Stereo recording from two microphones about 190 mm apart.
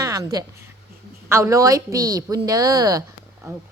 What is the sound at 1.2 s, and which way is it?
A woman's voice, 15° right (ahead or behind).